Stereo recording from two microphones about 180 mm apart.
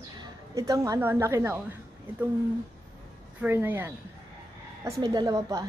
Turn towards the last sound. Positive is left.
turn(degrees=-20)  # may be behind; listen again after turning